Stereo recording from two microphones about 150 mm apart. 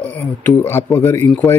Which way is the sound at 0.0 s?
10° left (ahead or behind).